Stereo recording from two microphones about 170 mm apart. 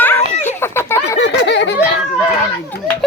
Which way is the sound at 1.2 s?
90° left.